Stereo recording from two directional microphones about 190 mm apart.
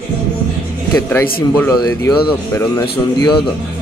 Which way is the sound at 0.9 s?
10° left (ahead or behind).